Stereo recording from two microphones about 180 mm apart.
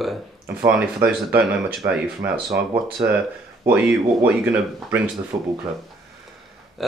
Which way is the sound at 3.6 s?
10° right (ahead or behind).